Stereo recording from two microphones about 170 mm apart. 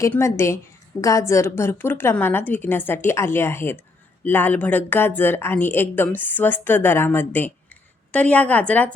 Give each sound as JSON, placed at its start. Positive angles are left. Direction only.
{"t": 0.0, "sound": "a woman's voice", "side_deg": 15}